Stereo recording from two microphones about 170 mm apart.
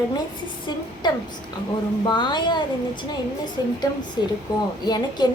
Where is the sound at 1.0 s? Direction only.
25° left (ahead or behind).